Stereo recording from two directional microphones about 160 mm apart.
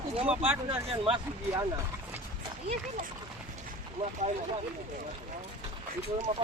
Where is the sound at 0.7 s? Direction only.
35° right (ahead or behind).